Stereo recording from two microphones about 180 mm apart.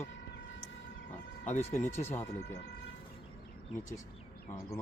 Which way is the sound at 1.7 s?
10° left (ahead or behind).